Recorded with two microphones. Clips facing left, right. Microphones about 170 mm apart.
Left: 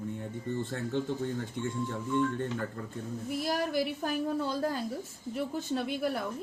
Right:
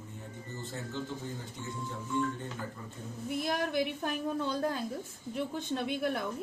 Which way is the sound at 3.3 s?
Centre (ahead or behind).